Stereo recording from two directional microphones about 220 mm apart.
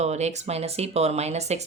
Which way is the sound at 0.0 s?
30° right (ahead or behind).